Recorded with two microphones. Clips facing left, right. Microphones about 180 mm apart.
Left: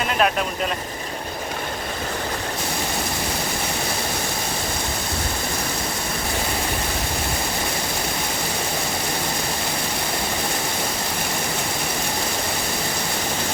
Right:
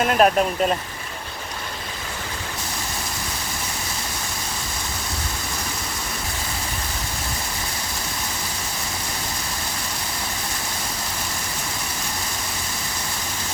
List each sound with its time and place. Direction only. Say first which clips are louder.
0.0 s speech: right 4 dB; 50° right (ahead or behind)